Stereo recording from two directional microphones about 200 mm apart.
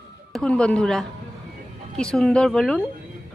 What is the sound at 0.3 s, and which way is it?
Speech, 5° left (ahead or behind).